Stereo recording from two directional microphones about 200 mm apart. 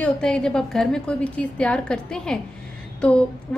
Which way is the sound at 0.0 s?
5° left (ahead or behind).